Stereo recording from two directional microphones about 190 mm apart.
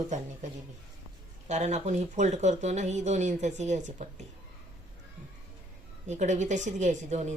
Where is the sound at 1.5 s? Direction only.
35° right (ahead or behind).